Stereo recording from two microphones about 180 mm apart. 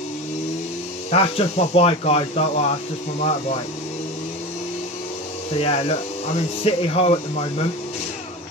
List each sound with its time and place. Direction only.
1.1 s speech: 35° left (ahead or behind)
5.5 s speech: 35° left (ahead or behind)